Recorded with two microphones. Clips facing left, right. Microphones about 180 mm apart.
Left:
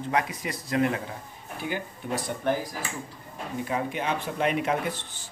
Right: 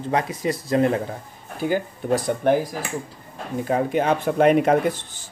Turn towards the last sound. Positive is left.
turn(degrees=-45)  # may be behind; listen again after turning